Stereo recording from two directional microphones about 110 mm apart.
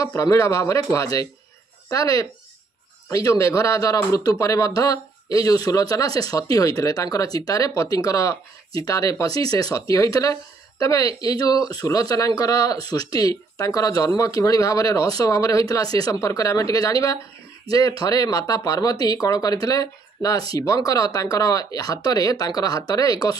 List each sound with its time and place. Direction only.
0.0 s speech: 30° left (ahead or behind)